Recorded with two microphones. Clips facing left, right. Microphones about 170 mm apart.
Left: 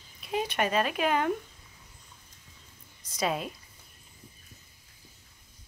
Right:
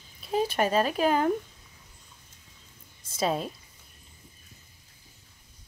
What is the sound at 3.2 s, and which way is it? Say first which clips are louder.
Speech: right 2 dB; 35° right (ahead or behind).